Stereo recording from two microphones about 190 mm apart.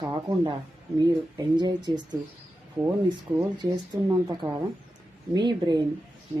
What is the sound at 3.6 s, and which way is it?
Speech, 20° right (ahead or behind).